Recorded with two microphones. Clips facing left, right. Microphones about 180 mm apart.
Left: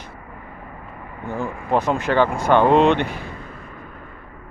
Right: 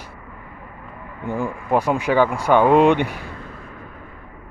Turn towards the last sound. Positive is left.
turn(degrees=-10)  # may be behind; listen again after turning